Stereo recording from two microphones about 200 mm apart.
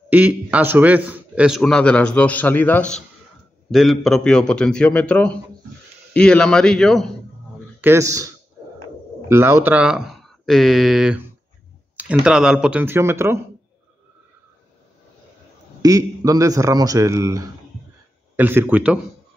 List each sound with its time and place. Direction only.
0.1 s a man's voice: 5° right (ahead or behind)
7.8 s a man's voice: 15° right (ahead or behind)
9.3 s a man's voice: 10° right (ahead or behind)
15.8 s a man's voice: 15° right (ahead or behind)